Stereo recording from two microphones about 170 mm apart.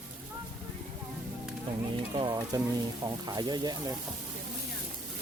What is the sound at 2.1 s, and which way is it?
Speech, 25° right (ahead or behind).